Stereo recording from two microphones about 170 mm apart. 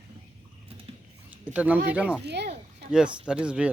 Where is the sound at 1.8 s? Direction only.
10° right (ahead or behind).